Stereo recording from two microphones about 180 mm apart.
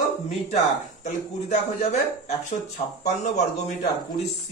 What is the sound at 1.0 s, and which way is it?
Speech, 40° left (ahead or behind).